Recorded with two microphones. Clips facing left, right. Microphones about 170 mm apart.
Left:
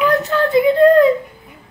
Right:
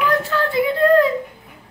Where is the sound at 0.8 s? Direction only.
20° left (ahead or behind).